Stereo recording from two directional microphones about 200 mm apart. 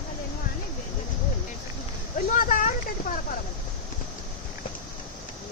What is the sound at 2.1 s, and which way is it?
Speech, 45° left (ahead or behind).